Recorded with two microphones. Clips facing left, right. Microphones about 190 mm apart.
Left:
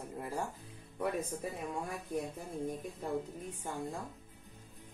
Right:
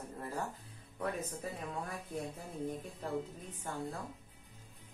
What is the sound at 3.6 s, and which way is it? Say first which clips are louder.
Speech: even; 15° left (ahead or behind).